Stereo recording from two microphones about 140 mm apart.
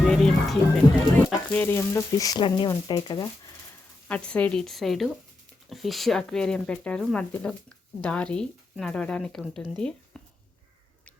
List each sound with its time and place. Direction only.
0.1 s music: 5° left (ahead or behind)
1.1 s speech: 15° left (ahead or behind); by 3.5 s 30° left (ahead or behind)
4.1 s speech: 10° left (ahead or behind)